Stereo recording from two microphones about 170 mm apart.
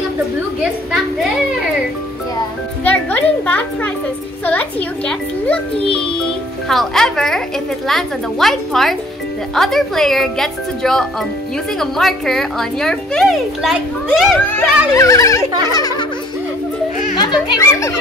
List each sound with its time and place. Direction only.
2.8 s a child's voice: 10° left (ahead or behind)
14.4 s a child's voice: 10° left (ahead or behind)
17.2 s speech: 25° left (ahead or behind)